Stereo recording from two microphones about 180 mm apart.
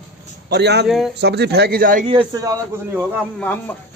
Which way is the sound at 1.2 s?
65° right (ahead or behind).